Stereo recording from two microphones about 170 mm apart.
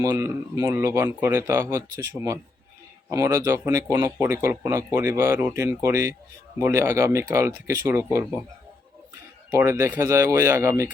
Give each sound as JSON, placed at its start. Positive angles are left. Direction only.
{"t": 0.0, "sound": "speech", "side_deg": -20}
{"t": 9.5, "sound": "speech", "side_deg": -15}